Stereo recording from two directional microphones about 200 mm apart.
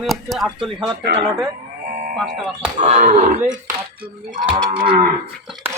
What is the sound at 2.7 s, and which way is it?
Speech, 35° right (ahead or behind).